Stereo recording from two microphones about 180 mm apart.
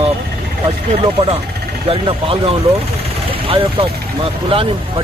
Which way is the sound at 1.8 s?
30° right (ahead or behind).